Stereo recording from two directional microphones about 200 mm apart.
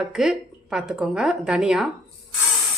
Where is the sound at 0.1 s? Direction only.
5° right (ahead or behind).